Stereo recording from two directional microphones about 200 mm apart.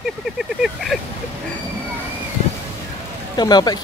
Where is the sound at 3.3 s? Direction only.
20° left (ahead or behind).